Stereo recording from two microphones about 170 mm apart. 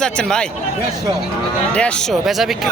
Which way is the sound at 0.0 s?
5° left (ahead or behind).